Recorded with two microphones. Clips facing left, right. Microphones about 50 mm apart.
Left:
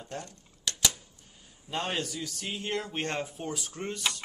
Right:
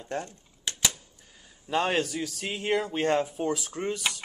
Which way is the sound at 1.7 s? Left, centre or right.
Right.